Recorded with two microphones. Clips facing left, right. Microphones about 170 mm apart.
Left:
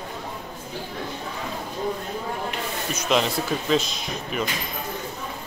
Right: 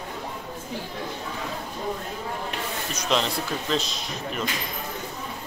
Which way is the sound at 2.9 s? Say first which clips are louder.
Left 3 dB; 5° left (ahead or behind).